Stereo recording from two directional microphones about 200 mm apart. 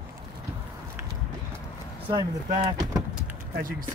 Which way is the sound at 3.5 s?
45° right (ahead or behind).